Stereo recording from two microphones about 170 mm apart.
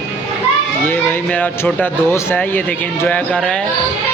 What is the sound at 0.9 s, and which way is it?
Speech, 10° left (ahead or behind).